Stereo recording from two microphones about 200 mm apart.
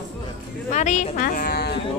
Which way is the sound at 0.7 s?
35° left (ahead or behind).